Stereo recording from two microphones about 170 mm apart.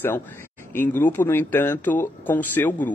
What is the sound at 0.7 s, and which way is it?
A man's voice, 10° left (ahead or behind).